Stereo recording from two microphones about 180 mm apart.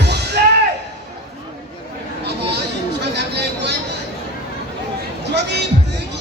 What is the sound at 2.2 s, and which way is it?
Chatter, 65° right (ahead or behind).